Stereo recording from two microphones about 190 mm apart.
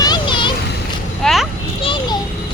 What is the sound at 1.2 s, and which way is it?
Speech, centre (ahead or behind).